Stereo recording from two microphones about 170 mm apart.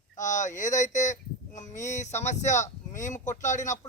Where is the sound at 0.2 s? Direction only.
45° left (ahead or behind).